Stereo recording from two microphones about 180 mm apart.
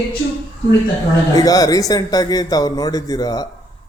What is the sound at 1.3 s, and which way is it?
Speech, 20° left (ahead or behind).